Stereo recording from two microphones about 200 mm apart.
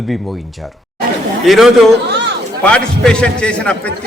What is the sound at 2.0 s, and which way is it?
Chatter, 55° right (ahead or behind).